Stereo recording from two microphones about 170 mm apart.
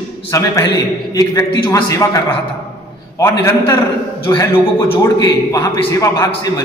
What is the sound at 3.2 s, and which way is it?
A man's voice, 20° left (ahead or behind).